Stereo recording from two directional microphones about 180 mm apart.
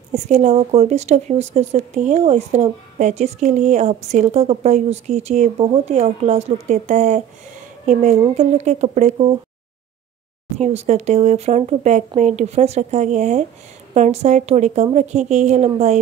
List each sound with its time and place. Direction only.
0.1 s a woman's voice: 40° right (ahead or behind)
10.6 s speech: 40° right (ahead or behind)